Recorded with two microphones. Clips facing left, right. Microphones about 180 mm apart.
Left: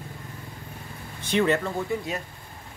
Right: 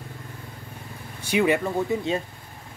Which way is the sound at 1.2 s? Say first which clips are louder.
Right 1 dB; 10° right (ahead or behind).